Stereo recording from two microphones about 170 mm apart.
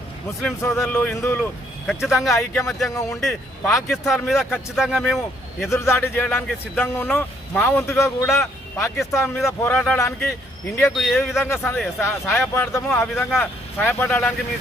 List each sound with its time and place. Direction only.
0.6 s speech: 15° left (ahead or behind)
1.9 s speech: centre (ahead or behind)
2.8 s speech: 20° left (ahead or behind)
3.9 s speech: centre (ahead or behind)
5.6 s speech: 15° left (ahead or behind)
10.9 s speech: centre (ahead or behind)
11.4 s speech: 10° left (ahead or behind)